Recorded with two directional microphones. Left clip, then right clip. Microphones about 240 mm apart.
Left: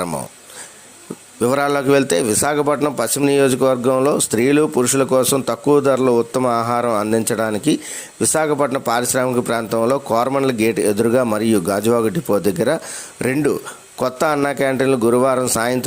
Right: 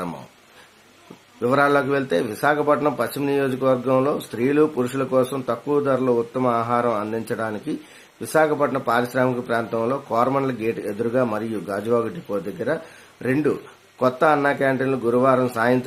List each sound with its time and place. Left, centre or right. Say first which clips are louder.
1.4 s a man's voice: left 1 dB; left